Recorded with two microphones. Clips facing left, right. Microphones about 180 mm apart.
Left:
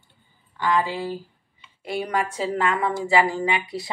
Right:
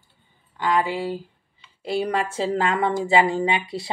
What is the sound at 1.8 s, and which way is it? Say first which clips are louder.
Speech: right 2 dB; 30° right (ahead or behind).